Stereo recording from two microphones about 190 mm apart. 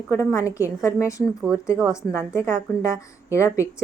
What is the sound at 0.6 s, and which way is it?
Speech, 15° left (ahead or behind).